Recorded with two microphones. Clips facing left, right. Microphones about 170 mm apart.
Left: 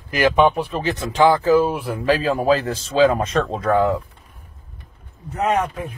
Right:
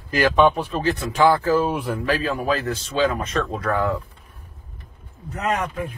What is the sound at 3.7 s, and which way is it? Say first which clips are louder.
Speech: left 6 dB; 15° left (ahead or behind).